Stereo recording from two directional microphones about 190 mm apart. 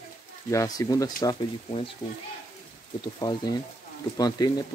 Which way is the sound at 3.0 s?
25° left (ahead or behind).